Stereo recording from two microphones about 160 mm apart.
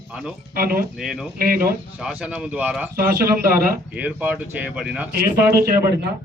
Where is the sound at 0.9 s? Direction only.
Centre (ahead or behind).